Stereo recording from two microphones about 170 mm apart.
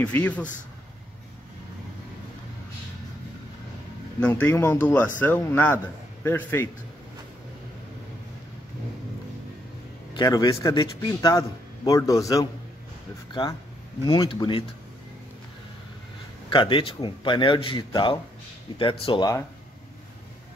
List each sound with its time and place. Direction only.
0.0 s speech: 10° left (ahead or behind)
4.2 s speech: 10° left (ahead or behind)
10.1 s a man's voice: 25° left (ahead or behind)
16.4 s a man's voice: 30° left (ahead or behind)